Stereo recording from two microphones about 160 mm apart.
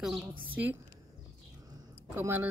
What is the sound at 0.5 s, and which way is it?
Speech, 10° right (ahead or behind).